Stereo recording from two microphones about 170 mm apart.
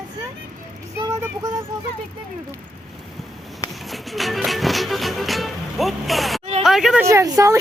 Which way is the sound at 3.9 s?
Centre (ahead or behind).